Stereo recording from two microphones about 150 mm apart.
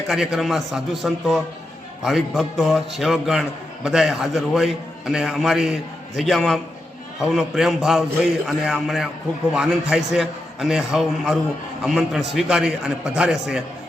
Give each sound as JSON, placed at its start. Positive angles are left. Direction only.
{"t": 0.1, "sound": "a man's voice", "side_deg": -5}